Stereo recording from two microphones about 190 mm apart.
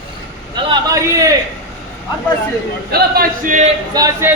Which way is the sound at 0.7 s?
20° right (ahead or behind).